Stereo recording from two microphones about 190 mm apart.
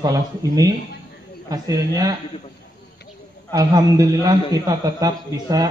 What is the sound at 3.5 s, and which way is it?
A man's voice, 20° right (ahead or behind).